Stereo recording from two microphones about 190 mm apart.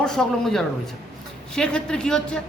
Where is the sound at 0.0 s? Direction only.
5° left (ahead or behind).